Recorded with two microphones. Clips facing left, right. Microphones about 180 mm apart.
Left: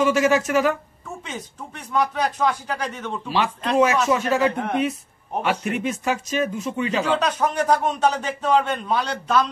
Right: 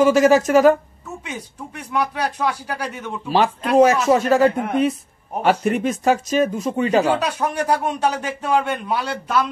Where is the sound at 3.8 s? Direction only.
40° right (ahead or behind).